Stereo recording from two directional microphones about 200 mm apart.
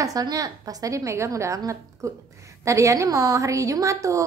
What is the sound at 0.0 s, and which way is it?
A woman's voice, 15° right (ahead or behind).